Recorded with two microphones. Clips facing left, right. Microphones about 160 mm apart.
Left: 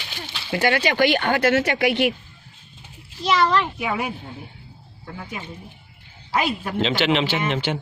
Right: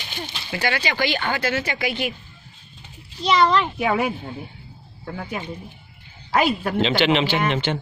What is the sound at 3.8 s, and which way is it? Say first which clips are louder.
Speech: right 4 dB; 60° right (ahead or behind).